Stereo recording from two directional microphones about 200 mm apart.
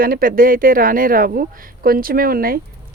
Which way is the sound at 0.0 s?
45° right (ahead or behind).